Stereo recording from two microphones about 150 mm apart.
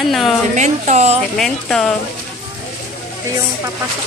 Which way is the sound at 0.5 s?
50° right (ahead or behind).